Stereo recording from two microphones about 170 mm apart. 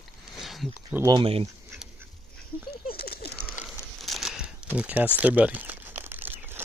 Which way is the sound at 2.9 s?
65° left (ahead or behind).